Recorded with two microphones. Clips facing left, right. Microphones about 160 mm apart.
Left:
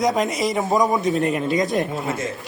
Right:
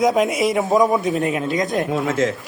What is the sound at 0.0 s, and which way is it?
A man's voice, 5° right (ahead or behind).